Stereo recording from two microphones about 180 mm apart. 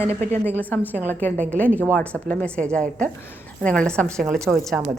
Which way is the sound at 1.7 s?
10° right (ahead or behind).